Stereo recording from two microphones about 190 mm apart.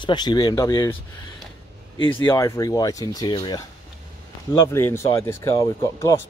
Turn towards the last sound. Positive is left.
turn(degrees=15)  # may be behind; listen again after turning